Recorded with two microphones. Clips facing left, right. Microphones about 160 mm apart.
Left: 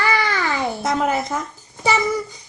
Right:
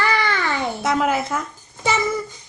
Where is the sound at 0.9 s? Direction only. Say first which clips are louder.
Right 1 dB; 5° right (ahead or behind).